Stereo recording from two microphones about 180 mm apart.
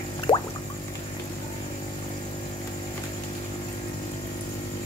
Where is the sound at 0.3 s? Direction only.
30° left (ahead or behind).